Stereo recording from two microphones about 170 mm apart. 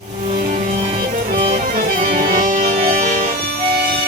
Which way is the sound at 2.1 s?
55° right (ahead or behind).